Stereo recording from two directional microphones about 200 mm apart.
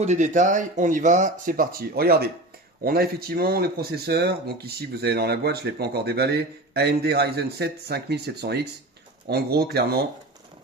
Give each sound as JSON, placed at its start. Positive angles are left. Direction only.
{"t": 0.0, "sound": "speech", "side_deg": -35}